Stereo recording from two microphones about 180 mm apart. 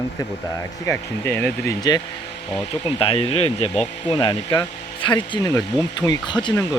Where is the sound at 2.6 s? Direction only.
25° left (ahead or behind).